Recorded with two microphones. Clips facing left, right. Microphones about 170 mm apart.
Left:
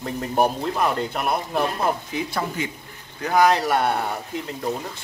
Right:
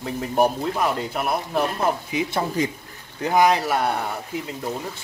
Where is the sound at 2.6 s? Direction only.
35° right (ahead or behind).